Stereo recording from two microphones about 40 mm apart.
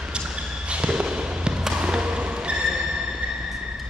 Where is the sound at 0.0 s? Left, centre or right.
Right.